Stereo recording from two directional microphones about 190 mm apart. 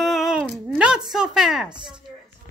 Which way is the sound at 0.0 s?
Centre (ahead or behind).